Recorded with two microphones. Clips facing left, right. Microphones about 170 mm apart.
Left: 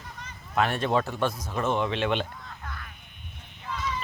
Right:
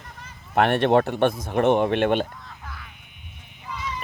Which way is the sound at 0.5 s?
65° right (ahead or behind).